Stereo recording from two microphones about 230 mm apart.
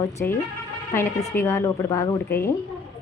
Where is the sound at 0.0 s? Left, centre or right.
Centre.